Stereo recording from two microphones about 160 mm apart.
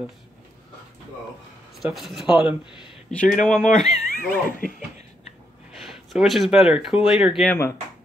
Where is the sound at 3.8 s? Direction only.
45° left (ahead or behind).